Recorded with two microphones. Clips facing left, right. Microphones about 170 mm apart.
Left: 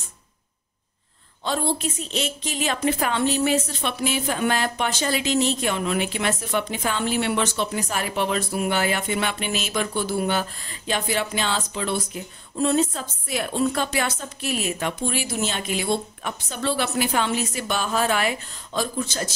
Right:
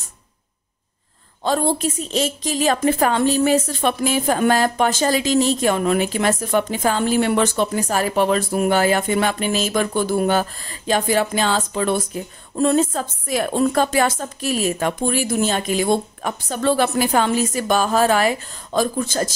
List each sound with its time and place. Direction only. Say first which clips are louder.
1.4 s a woman's voice: right 5 dB; 45° right (ahead or behind)